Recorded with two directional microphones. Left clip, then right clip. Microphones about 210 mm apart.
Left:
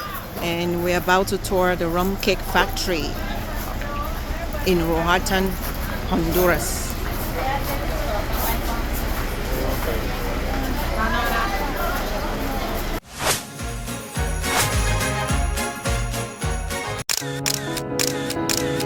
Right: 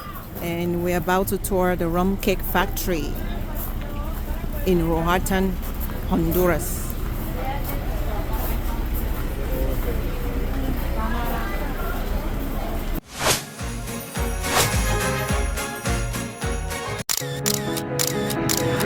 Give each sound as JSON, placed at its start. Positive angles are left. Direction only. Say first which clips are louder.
{"t": 0.4, "sound": "speech", "louder": "left 2 dB", "side_deg": -10}
{"t": 4.6, "sound": "speech", "louder": "left 1 dB", "side_deg": -15}
{"t": 17.1, "sound": "camera", "louder": "even", "side_deg": 0}